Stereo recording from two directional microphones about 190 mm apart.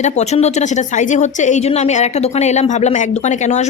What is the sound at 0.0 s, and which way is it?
Speech, 35° left (ahead or behind).